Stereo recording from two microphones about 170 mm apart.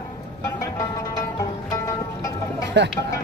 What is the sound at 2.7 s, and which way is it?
Speech, 90° right.